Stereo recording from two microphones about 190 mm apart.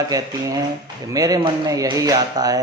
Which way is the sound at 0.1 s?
20° right (ahead or behind).